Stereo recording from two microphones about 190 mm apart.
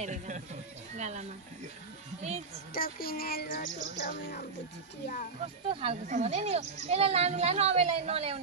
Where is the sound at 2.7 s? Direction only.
50° left (ahead or behind).